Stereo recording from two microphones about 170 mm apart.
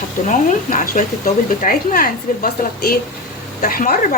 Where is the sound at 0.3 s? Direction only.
50° left (ahead or behind).